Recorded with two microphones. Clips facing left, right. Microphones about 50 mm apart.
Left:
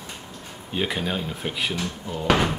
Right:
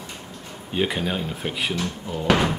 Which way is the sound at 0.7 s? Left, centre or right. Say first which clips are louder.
Right 2 dB; centre.